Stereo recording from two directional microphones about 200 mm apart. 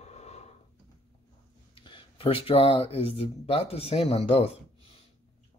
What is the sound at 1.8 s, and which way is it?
Speech, 25° left (ahead or behind).